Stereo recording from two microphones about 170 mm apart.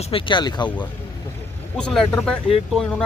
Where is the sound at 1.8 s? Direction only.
5° left (ahead or behind).